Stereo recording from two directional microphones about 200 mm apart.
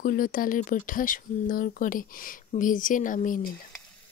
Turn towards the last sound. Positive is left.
turn(degrees=45)  # may be behind; listen again after turning